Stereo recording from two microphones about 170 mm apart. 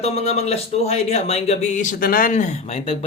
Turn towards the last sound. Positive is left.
turn(degrees=35)  # may be behind; listen again after turning